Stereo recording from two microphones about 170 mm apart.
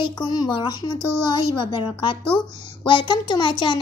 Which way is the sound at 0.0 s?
30° left (ahead or behind).